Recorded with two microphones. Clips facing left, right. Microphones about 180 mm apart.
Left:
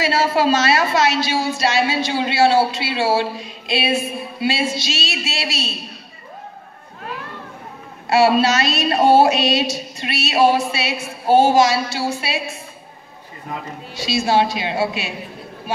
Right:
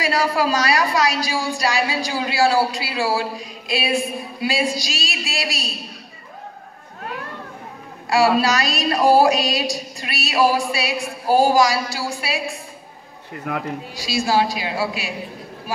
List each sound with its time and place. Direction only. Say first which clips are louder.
0.0 s a woman's voice: left 2 dB; 25° left (ahead or behind)
8.1 s a woman's voice: left 2 dB; 25° left (ahead or behind)
13.5 s speech: right 4 dB; 70° right (ahead or behind)
13.9 s a woman's voice: left 2 dB; 25° left (ahead or behind)